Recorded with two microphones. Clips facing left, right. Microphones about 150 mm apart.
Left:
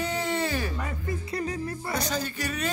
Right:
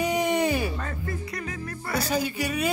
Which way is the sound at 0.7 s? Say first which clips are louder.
Even; 15° left (ahead or behind).